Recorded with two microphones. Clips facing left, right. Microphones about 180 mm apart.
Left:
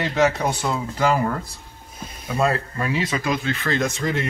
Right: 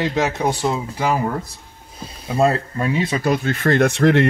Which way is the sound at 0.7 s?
15° right (ahead or behind).